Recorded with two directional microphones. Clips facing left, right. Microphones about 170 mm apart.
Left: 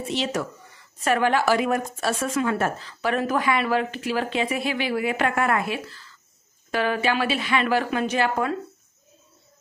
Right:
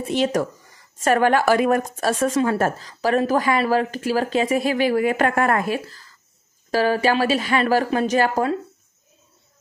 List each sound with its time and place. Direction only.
0.1 s a woman's voice: 50° right (ahead or behind)